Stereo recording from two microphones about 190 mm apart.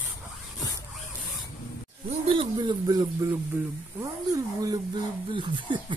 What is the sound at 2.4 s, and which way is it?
Speech, 25° right (ahead or behind).